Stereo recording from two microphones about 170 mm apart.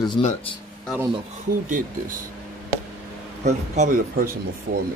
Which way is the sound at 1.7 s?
55° right (ahead or behind).